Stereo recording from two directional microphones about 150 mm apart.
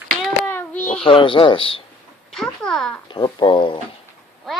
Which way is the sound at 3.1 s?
30° left (ahead or behind).